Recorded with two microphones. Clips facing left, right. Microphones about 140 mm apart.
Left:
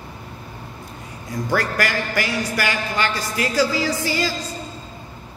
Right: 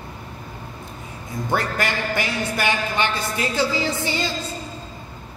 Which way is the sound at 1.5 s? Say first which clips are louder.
Left 1 dB; 20° right (ahead or behind).